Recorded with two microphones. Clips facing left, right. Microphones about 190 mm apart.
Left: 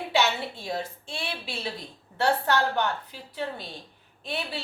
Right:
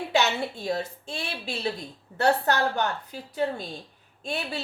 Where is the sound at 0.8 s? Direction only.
40° right (ahead or behind).